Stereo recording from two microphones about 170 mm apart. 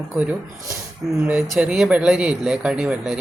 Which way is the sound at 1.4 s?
5° right (ahead or behind).